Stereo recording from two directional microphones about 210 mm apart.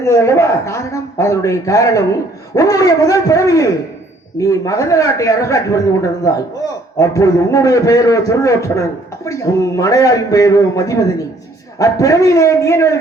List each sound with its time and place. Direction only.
0.0 s a man's voice: 15° left (ahead or behind)